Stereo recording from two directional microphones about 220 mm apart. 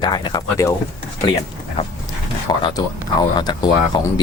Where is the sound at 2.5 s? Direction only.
20° left (ahead or behind).